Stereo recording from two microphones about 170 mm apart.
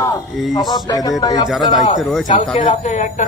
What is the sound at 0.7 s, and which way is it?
Speech, 25° left (ahead or behind).